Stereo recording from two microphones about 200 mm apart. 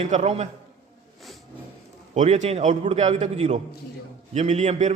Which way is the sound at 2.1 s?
35° right (ahead or behind).